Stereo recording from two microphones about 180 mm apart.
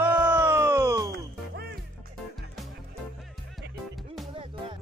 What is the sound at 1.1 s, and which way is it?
Music, 60° right (ahead or behind).